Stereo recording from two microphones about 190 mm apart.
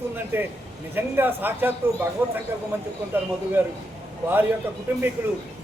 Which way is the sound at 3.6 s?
10° right (ahead or behind).